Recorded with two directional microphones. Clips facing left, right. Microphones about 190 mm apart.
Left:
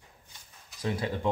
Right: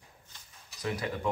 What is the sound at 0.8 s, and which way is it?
Speech, 25° left (ahead or behind).